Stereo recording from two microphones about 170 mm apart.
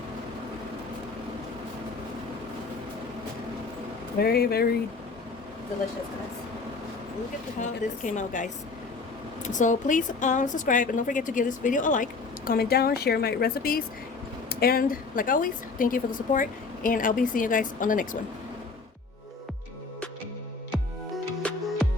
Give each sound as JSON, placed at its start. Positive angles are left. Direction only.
{"t": 4.2, "sound": "speech", "side_deg": 65}
{"t": 7.6, "sound": "a woman's voice", "side_deg": 45}
{"t": 9.6, "sound": "a woman's voice", "side_deg": 50}
{"t": 12.5, "sound": "a woman's voice", "side_deg": 65}